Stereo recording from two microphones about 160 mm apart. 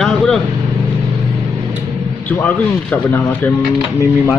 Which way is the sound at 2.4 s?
10° left (ahead or behind).